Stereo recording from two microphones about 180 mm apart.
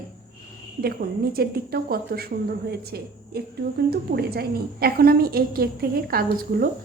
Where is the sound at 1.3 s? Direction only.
60° right (ahead or behind).